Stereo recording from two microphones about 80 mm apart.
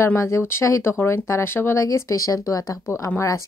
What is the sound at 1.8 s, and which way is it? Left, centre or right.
Speech, left.